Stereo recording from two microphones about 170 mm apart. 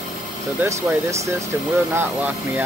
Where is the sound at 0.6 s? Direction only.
15° right (ahead or behind).